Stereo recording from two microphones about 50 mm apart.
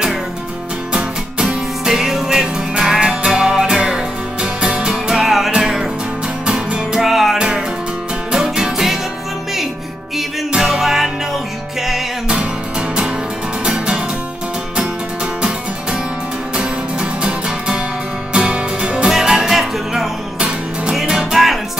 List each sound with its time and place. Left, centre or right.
0.9 s music: centre
6.4 s music: centre
7.0 s music: centre
7.3 s music: centre
10.5 s music: centre
13.7 s music: centre
16.5 s music: centre
20.3 s music: centre
20.9 s music: centre